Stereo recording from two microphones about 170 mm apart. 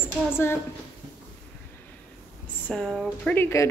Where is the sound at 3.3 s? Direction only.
15° left (ahead or behind).